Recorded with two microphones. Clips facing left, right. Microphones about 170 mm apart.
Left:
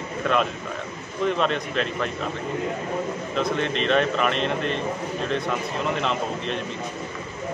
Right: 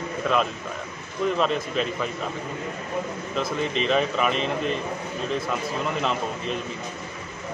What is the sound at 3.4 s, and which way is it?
Speech, 5° right (ahead or behind).